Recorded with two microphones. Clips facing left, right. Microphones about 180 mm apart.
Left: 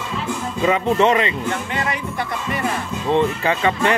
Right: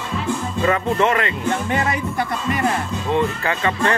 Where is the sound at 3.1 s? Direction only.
20° left (ahead or behind).